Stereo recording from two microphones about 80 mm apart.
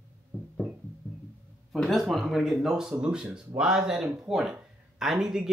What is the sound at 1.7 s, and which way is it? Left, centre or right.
Speech, centre.